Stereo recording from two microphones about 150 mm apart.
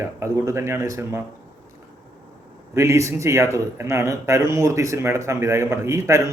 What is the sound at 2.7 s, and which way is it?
Speech, 20° right (ahead or behind).